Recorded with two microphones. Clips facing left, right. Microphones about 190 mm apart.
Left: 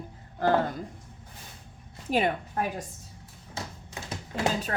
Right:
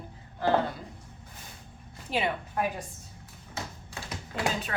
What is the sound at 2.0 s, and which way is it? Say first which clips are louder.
Speech: left 4 dB; 45° left (ahead or behind).